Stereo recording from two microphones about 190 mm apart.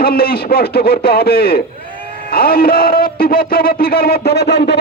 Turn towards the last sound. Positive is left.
turn(degrees=60)  # may be behind; listen again after turning